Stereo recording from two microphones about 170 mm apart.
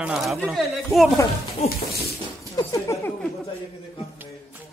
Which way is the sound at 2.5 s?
20° left (ahead or behind).